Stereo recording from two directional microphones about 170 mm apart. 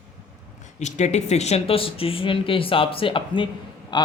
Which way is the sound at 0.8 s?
45° left (ahead or behind).